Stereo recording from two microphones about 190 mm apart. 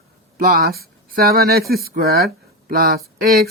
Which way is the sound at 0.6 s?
55° right (ahead or behind).